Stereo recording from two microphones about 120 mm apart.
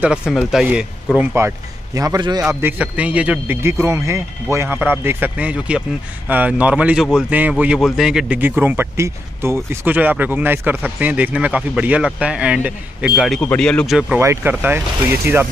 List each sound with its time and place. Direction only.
0.0 s speech: 5° right (ahead or behind)
1.4 s a man's voice: 25° right (ahead or behind)
2.6 s speech: 10° right (ahead or behind)
8.4 s speech: 15° right (ahead or behind)
13.4 s speech: 10° left (ahead or behind)
14.1 s speech: 20° right (ahead or behind)